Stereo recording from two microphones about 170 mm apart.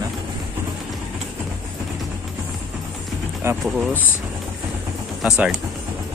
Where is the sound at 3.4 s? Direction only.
15° right (ahead or behind).